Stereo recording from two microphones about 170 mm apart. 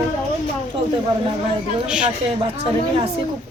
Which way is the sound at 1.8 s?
5° right (ahead or behind).